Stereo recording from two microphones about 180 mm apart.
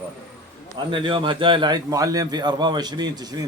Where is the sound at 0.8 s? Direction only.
25° right (ahead or behind).